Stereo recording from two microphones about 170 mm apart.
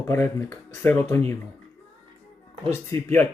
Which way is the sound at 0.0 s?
15° left (ahead or behind).